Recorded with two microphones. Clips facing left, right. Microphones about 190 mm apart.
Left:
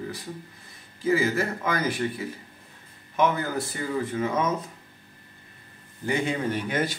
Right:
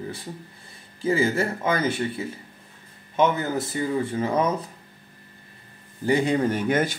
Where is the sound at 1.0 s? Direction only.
30° right (ahead or behind).